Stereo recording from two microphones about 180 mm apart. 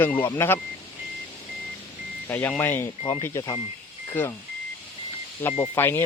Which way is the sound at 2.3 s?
10° left (ahead or behind).